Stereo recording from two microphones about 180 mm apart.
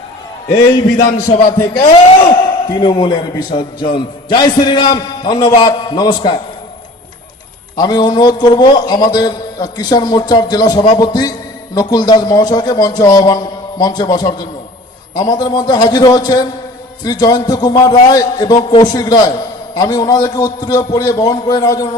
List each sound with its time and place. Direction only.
0.9 s a man's voice: 50° left (ahead or behind)
2.3 s a man's voice: 25° left (ahead or behind)
7.8 s a man's voice: 25° left (ahead or behind)